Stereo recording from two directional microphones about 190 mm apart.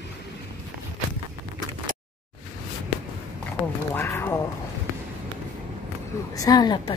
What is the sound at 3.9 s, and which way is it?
Speech, 10° left (ahead or behind).